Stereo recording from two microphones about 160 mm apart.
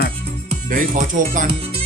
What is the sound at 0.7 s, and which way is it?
Speech, 55° right (ahead or behind).